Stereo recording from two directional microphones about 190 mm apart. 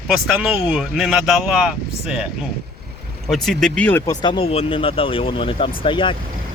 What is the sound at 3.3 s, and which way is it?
Speech, centre (ahead or behind).